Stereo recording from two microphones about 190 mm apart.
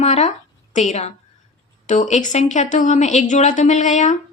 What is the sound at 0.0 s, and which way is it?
Speech, 35° left (ahead or behind).